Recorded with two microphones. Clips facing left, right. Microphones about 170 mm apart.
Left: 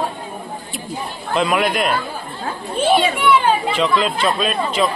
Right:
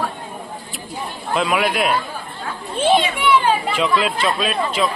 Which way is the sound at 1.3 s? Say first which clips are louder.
Left 1 dB; centre (ahead or behind).